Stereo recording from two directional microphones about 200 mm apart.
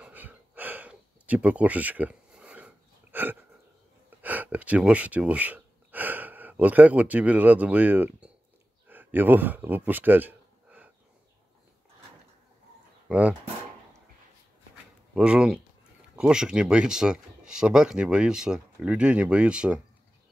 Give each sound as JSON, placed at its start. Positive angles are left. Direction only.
{"t": 0.0, "sound": "gasp", "side_deg": -10}
{"t": 4.2, "sound": "speech", "side_deg": -10}
{"t": 8.8, "sound": "a sound", "side_deg": -10}
{"t": 13.1, "sound": "speech", "side_deg": -5}
{"t": 15.1, "sound": "speech", "side_deg": -5}